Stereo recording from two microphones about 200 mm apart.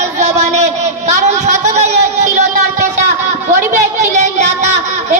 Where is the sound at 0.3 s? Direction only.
35° right (ahead or behind).